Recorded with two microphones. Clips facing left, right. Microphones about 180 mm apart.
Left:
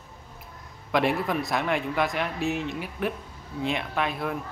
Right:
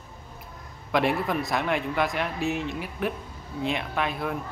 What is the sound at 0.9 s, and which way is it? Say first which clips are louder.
Speech: even; centre (ahead or behind).